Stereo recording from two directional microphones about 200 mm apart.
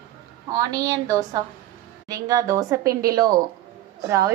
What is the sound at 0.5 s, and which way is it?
A woman's voice, 15° right (ahead or behind).